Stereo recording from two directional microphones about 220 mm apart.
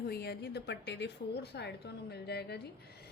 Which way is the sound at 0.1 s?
45° left (ahead or behind).